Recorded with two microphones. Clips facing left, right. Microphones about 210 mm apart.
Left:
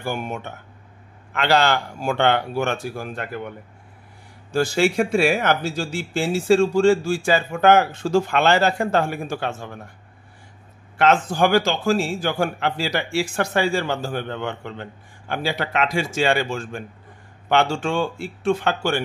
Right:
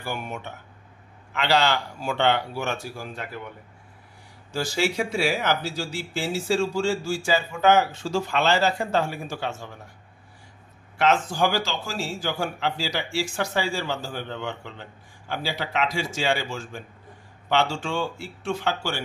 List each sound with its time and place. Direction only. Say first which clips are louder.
0.0 s a man's voice: left 5 dB; 50° left (ahead or behind)
11.0 s a man's voice: left 4 dB; 55° left (ahead or behind)